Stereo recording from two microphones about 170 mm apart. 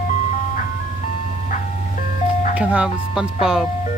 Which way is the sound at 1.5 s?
50° left (ahead or behind).